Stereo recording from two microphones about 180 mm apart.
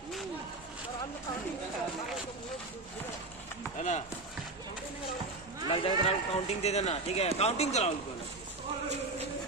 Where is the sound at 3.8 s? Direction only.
40° left (ahead or behind).